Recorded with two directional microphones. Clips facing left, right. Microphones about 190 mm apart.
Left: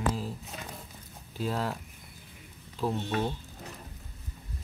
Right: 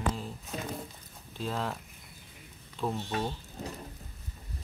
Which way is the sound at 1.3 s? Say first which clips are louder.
Left 2 dB; 5° left (ahead or behind).